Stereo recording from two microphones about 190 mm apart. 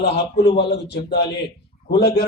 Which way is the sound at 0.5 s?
60° left (ahead or behind).